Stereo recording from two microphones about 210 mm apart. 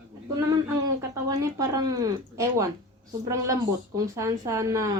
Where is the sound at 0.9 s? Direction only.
15° right (ahead or behind).